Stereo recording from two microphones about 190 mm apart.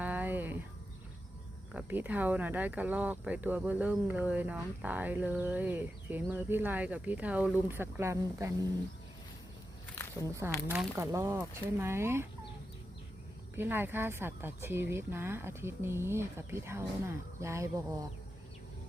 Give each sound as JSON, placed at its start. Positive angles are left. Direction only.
{"t": 0.0, "sound": "a sound", "side_deg": -10}
{"t": 1.7, "sound": "speech", "side_deg": -10}
{"t": 10.2, "sound": "speech", "side_deg": -15}
{"t": 13.6, "sound": "speech", "side_deg": -10}